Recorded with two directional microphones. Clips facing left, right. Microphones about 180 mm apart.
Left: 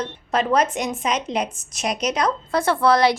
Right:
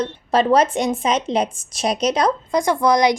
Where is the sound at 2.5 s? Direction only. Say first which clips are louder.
Left 1 dB; 15° right (ahead or behind).